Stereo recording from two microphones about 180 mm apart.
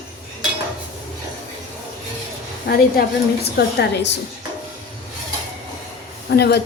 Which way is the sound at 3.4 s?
65° left (ahead or behind).